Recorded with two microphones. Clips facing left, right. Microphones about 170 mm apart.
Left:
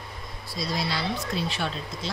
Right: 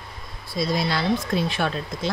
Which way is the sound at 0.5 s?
50° right (ahead or behind).